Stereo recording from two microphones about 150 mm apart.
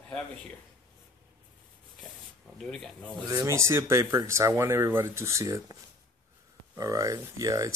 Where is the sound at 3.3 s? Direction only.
20° right (ahead or behind).